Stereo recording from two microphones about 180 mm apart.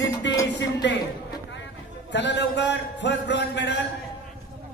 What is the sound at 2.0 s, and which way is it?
A man's voice, 75° left (ahead or behind).